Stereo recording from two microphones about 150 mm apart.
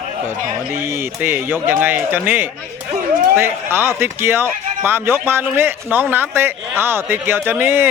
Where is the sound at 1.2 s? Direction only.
15° right (ahead or behind).